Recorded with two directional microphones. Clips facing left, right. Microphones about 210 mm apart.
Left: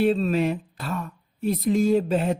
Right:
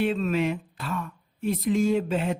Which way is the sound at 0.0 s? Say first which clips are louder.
Left 3 dB; 35° left (ahead or behind).